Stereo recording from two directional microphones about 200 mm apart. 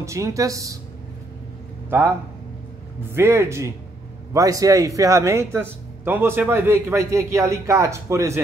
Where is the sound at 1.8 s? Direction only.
10° right (ahead or behind).